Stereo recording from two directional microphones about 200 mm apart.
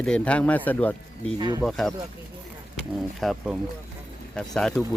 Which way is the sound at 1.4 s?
20° right (ahead or behind).